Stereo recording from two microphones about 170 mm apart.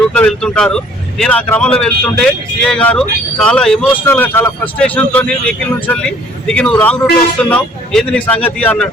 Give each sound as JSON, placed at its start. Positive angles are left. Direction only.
{"t": 0.1, "sound": "speech", "side_deg": 5}